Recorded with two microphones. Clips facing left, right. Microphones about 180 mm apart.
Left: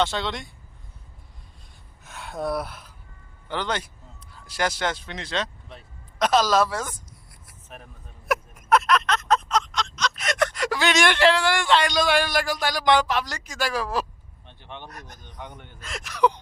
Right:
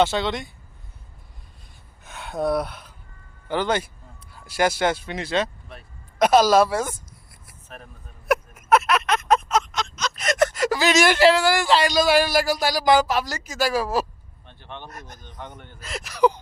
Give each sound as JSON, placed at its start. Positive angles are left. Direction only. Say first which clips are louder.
{"t": 0.0, "sound": "speech", "louder": "right 4 dB", "side_deg": -5}
{"t": 2.0, "sound": "gasp", "louder": "right 4 dB", "side_deg": 0}
{"t": 3.5, "sound": "speech", "louder": "right 5 dB", "side_deg": -10}
{"t": 7.7, "sound": "speech", "louder": "right 2 dB", "side_deg": 15}
{"t": 8.3, "sound": "a sound", "louder": "right 2 dB", "side_deg": -5}
{"t": 14.4, "sound": "speech", "louder": "right 1 dB", "side_deg": 15}
{"t": 15.8, "sound": "speech", "louder": "right 3 dB", "side_deg": 0}